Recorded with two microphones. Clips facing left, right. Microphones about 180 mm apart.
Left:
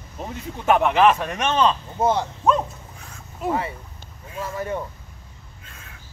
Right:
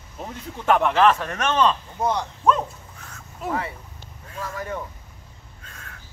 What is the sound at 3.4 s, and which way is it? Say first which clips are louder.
Speech: left 3 dB; 20° left (ahead or behind).